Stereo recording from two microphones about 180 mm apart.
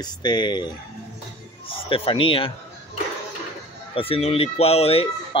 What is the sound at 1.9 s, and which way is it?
Speech, 30° left (ahead or behind).